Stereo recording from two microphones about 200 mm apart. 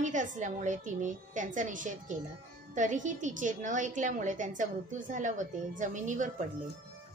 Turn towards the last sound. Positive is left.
turn(degrees=-40)  # may be behind; listen again after turning